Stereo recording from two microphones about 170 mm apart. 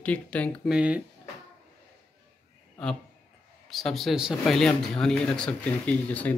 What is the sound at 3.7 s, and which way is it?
Speech, centre (ahead or behind).